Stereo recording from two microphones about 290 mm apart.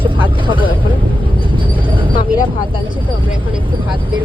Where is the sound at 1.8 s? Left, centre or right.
Centre.